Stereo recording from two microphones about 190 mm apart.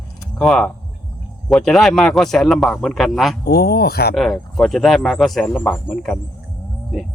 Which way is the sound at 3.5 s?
55° left (ahead or behind).